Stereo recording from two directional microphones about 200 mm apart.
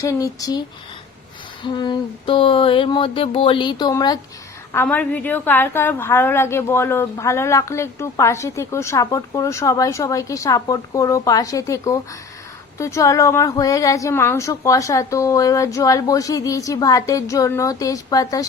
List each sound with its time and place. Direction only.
0.0 s a woman's voice: 15° left (ahead or behind)
1.6 s a sound: 20° left (ahead or behind)
4.7 s a woman's voice: 10° left (ahead or behind)